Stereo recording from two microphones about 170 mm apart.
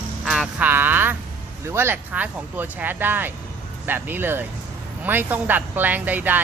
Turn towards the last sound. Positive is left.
turn(degrees=-10)  # may be behind; listen again after turning